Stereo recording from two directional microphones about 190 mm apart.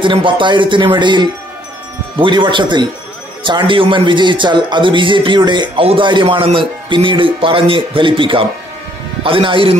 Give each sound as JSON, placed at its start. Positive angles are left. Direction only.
{"t": 0.0, "sound": "speech", "side_deg": -25}